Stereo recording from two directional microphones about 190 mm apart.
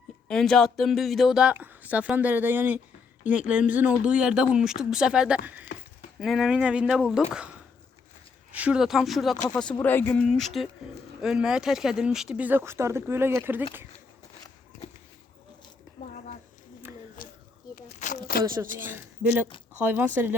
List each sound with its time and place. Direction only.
0.3 s speech: 5° left (ahead or behind)
8.5 s speech: 5° right (ahead or behind)
9.8 s speech: 10° left (ahead or behind); by 13.7 s 10° right (ahead or behind)
17.2 s a sound: 45° left (ahead or behind)
18.4 s speech: 15° right (ahead or behind)